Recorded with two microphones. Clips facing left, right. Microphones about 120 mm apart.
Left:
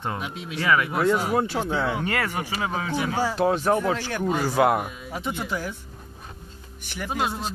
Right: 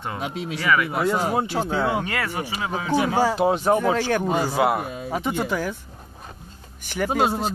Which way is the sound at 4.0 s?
90° right.